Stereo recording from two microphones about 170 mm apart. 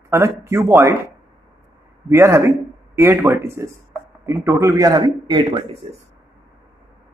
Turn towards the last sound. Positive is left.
turn(degrees=-25)  # may be behind; listen again after turning